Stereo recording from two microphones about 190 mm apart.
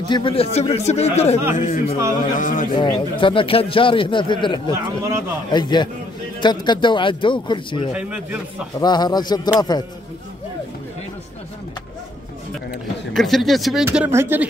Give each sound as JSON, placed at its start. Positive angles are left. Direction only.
{"t": 0.1, "sound": "a man's voice", "side_deg": 30}
{"t": 2.8, "sound": "a man's voice", "side_deg": 25}
{"t": 7.9, "sound": "speech", "side_deg": -5}
{"t": 8.7, "sound": "a man's voice", "side_deg": 20}
{"t": 13.1, "sound": "a man's voice", "side_deg": 0}
{"t": 13.8, "sound": "speech", "side_deg": -10}